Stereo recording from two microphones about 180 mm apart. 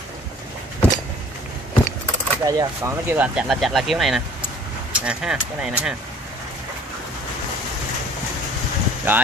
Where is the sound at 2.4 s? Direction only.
20° right (ahead or behind).